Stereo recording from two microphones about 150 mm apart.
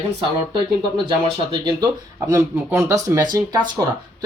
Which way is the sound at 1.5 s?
30° right (ahead or behind).